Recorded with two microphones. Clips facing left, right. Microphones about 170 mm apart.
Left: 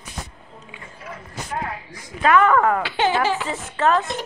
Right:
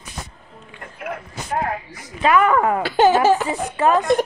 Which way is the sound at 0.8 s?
60° right (ahead or behind).